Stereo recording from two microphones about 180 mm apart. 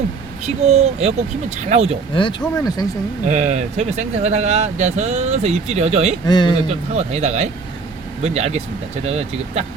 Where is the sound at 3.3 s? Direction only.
40° right (ahead or behind).